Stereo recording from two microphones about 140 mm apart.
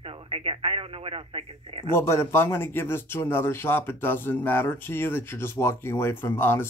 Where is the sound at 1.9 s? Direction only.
20° left (ahead or behind).